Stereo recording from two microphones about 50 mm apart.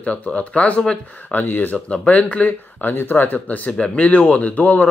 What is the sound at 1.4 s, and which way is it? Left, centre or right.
Speech, left.